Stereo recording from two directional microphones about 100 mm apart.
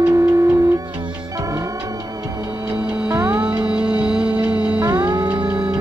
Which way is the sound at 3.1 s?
35° right (ahead or behind).